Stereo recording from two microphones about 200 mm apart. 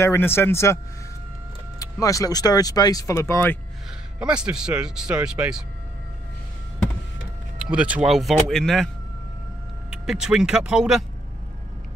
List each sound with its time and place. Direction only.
0.0 s speech: 10° left (ahead or behind)
1.8 s speech: 15° left (ahead or behind)
4.2 s speech: 5° right (ahead or behind)
7.6 s speech: 5° right (ahead or behind)